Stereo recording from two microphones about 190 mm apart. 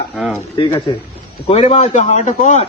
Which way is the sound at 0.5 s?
25° left (ahead or behind).